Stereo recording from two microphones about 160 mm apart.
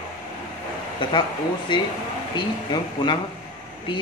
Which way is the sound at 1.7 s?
30° left (ahead or behind).